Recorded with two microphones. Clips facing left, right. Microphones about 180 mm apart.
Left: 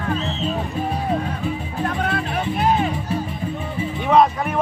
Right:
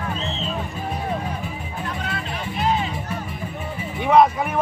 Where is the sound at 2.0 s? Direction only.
55° left (ahead or behind).